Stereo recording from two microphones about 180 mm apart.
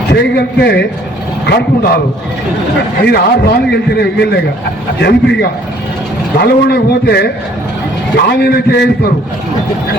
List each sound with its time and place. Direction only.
0.1 s a man's voice: 65° left (ahead or behind)
3.0 s a man's voice: 65° left (ahead or behind)